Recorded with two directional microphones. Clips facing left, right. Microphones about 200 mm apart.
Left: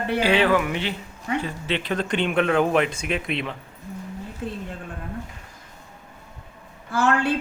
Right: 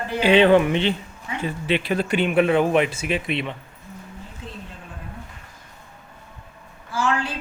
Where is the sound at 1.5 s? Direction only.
15° right (ahead or behind).